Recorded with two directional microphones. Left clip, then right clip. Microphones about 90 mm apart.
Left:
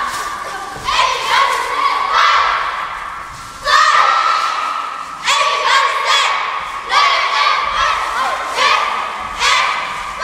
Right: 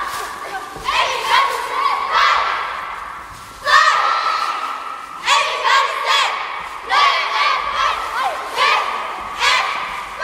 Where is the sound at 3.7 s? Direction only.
40° left (ahead or behind).